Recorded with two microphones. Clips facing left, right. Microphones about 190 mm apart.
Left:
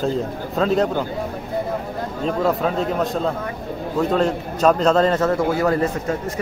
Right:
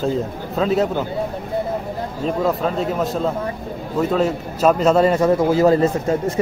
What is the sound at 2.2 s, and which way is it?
A man's voice, centre (ahead or behind).